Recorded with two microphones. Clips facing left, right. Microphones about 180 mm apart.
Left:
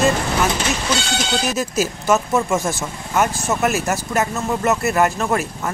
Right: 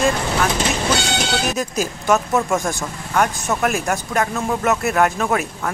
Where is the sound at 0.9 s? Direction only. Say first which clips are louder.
Right 2 dB; 60° right (ahead or behind).